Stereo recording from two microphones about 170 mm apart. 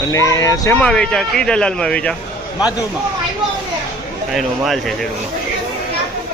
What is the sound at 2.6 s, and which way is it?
Speech, 20° left (ahead or behind).